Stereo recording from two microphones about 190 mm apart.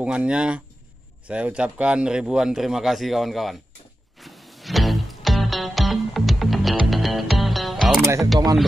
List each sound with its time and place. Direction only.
0.0 s a man's voice: 5° right (ahead or behind)
4.2 s music: centre (ahead or behind)